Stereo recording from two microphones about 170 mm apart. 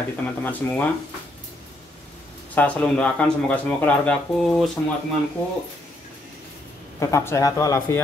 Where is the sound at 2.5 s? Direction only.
10° left (ahead or behind).